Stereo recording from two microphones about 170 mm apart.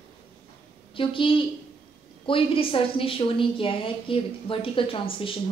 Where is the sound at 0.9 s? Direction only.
30° left (ahead or behind).